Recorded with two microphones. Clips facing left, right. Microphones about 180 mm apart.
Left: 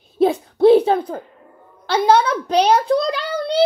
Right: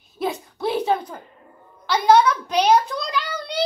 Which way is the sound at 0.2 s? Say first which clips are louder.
Left 11 dB; 30° left (ahead or behind).